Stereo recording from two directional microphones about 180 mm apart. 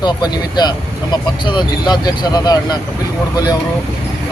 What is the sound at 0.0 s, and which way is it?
Speech, 25° left (ahead or behind).